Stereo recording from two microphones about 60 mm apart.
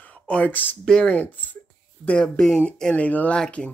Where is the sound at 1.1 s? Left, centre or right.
Left.